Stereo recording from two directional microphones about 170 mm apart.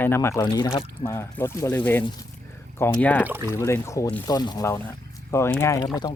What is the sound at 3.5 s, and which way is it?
Speech, 15° left (ahead or behind).